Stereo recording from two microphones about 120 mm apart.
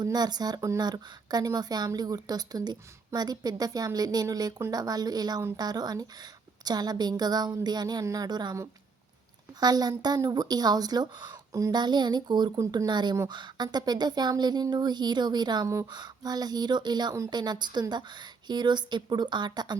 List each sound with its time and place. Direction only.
0.0 s speech: 35° right (ahead or behind)
9.6 s speech: 35° right (ahead or behind)
15.6 s speech: 25° right (ahead or behind)
15.9 s speech: 35° right (ahead or behind)